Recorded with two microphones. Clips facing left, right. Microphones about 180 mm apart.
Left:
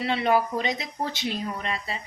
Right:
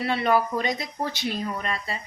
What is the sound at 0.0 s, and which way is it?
A woman's voice, 20° left (ahead or behind).